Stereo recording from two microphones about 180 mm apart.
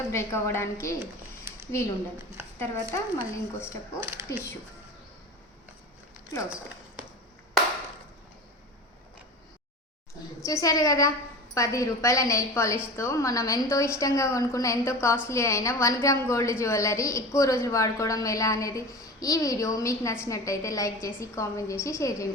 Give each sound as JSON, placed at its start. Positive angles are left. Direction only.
{"t": 0.1, "sound": "a woman's voice", "side_deg": 15}
{"t": 2.6, "sound": "a woman's voice", "side_deg": 15}
{"t": 10.4, "sound": "a woman's voice", "side_deg": 20}